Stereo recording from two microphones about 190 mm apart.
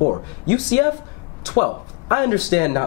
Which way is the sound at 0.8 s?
15° left (ahead or behind).